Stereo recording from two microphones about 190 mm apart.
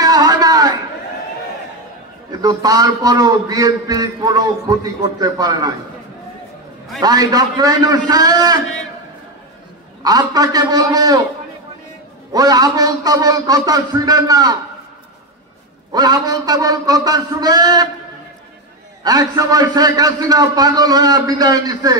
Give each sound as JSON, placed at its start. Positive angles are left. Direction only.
{"t": 0.0, "sound": "a sound", "side_deg": -20}
{"t": 2.4, "sound": "a man's voice", "side_deg": -20}
{"t": 7.0, "sound": "a man's voice", "side_deg": -20}
{"t": 10.0, "sound": "a man's voice", "side_deg": -20}
{"t": 12.3, "sound": "a man's voice", "side_deg": -20}
{"t": 15.9, "sound": "a man's voice", "side_deg": -20}
{"t": 19.0, "sound": "a man's voice", "side_deg": -20}